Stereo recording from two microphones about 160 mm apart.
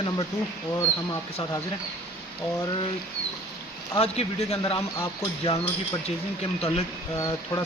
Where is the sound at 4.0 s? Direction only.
40° left (ahead or behind).